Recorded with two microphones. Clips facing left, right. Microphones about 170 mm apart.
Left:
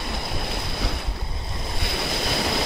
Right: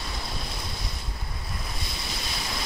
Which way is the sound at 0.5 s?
75° left (ahead or behind).